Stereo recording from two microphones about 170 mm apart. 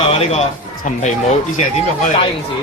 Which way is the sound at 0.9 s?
45° left (ahead or behind).